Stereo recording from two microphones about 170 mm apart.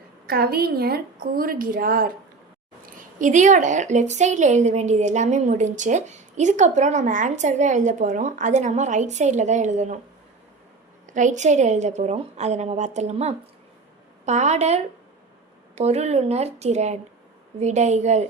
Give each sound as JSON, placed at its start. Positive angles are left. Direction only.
{"t": 0.3, "sound": "a woman's voice", "side_deg": -65}
{"t": 3.2, "sound": "a woman's voice", "side_deg": -45}
{"t": 11.1, "sound": "a woman's voice", "side_deg": -45}